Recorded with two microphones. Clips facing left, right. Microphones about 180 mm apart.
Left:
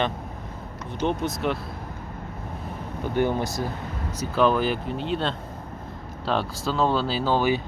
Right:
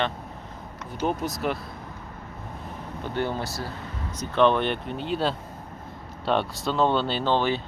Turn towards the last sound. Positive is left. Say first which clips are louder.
# left 1 dB
turn(degrees=10)  # may be behind; listen again after turning